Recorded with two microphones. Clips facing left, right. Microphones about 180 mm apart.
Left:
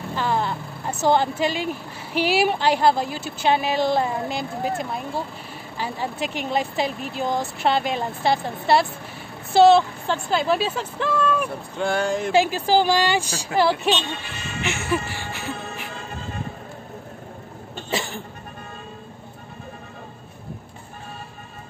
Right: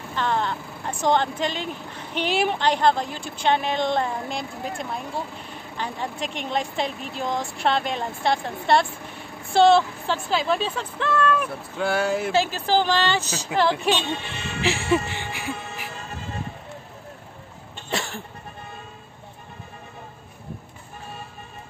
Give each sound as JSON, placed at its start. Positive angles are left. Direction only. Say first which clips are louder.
{"t": 0.1, "sound": "speech", "louder": "left 1 dB", "side_deg": 5}
{"t": 11.7, "sound": "speech", "louder": "even", "side_deg": -5}
{"t": 12.3, "sound": "speech", "louder": "left 3 dB", "side_deg": 15}
{"t": 14.6, "sound": "music", "louder": "right 3 dB", "side_deg": -30}
{"t": 17.9, "sound": "music", "louder": "left 2 dB", "side_deg": 0}